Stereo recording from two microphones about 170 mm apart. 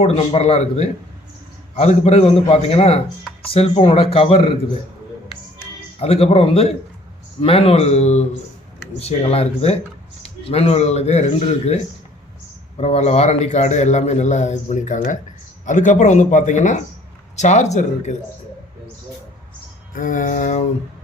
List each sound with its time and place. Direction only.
0.0 s speech: 40° left (ahead or behind)
6.0 s a man's voice: 35° left (ahead or behind)
19.9 s a man's voice: 50° left (ahead or behind)